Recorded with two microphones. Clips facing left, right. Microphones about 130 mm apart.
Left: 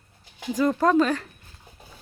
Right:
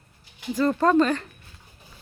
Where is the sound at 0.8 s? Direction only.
10° left (ahead or behind).